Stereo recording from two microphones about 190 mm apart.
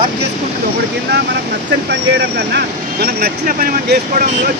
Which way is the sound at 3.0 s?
50° right (ahead or behind).